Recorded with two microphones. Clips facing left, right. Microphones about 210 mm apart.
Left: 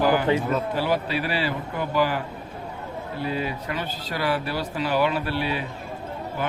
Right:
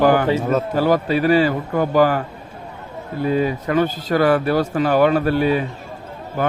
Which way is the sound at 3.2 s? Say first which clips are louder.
Right 10 dB; 45° right (ahead or behind).